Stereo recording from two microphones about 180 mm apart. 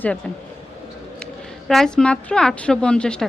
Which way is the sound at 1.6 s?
Centre (ahead or behind).